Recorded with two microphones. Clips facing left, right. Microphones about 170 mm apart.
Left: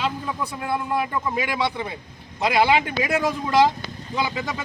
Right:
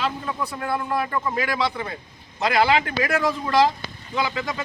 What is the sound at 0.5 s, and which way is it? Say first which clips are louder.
A man's voice: left 1 dB; 15° left (ahead or behind).